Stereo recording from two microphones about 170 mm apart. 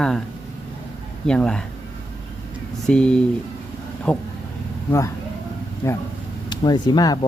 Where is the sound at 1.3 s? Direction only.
5° left (ahead or behind).